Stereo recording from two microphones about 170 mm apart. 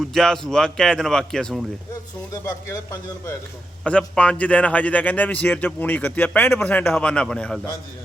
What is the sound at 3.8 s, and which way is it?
A man's voice, 5° left (ahead or behind).